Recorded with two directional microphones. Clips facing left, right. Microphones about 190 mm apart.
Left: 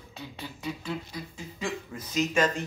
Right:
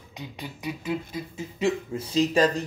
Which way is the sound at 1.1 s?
25° right (ahead or behind).